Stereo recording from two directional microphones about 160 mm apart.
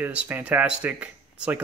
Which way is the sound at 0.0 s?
10° right (ahead or behind).